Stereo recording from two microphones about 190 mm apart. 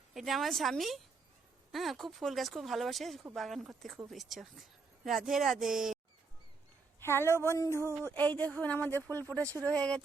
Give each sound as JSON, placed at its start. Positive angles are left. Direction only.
{"t": 0.1, "sound": "speech", "side_deg": 0}
{"t": 7.0, "sound": "speech", "side_deg": 10}